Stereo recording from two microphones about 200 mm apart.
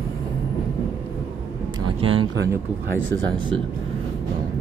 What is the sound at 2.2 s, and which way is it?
Speech, 65° right (ahead or behind).